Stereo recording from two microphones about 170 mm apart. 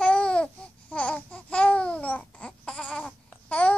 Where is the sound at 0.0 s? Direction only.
5° left (ahead or behind).